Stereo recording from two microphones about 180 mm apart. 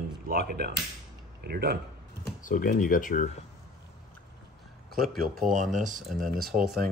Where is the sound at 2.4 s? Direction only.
50° left (ahead or behind).